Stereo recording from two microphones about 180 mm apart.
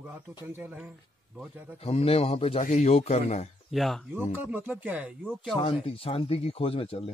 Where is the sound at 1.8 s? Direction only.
35° left (ahead or behind).